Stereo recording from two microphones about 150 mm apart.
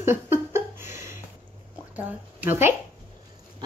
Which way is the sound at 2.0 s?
10° right (ahead or behind).